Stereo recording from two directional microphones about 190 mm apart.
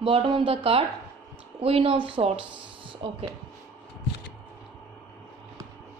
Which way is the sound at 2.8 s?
25° right (ahead or behind).